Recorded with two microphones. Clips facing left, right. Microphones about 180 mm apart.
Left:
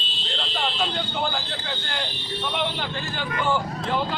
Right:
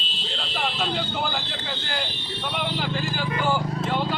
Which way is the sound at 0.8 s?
5° right (ahead or behind).